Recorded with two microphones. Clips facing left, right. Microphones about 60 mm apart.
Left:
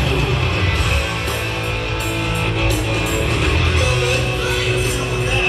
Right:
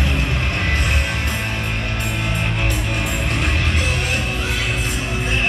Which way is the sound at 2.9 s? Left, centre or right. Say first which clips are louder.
Left 3 dB; centre.